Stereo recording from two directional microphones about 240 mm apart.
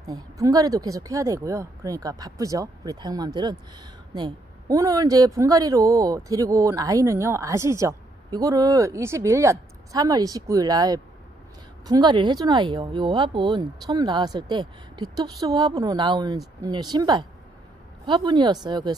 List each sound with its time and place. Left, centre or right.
0.0 s a woman's voice: centre